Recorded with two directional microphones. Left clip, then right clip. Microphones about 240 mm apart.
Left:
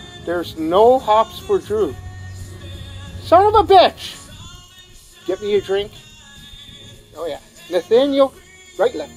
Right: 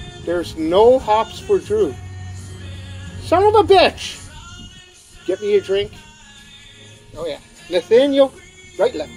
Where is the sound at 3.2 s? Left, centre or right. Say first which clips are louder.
Left 1 dB; centre.